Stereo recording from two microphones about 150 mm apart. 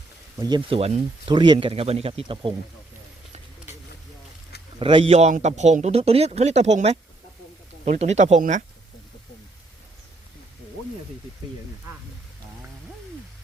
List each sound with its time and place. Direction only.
0.3 s speech: 30° right (ahead or behind)
0.8 s a man's voice: 45° right (ahead or behind)
1.3 s speech: 30° right (ahead or behind)
4.8 s a man's voice: 35° right (ahead or behind); by 8.6 s 55° right (ahead or behind)